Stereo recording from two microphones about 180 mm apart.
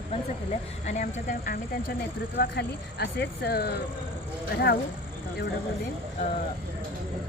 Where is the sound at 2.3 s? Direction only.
75° left (ahead or behind).